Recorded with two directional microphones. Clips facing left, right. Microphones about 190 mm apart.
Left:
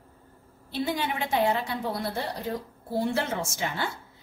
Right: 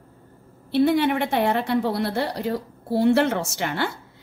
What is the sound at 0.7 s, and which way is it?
A woman's voice, 60° right (ahead or behind).